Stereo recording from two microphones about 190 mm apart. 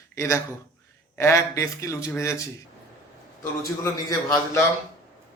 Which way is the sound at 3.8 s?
15° left (ahead or behind).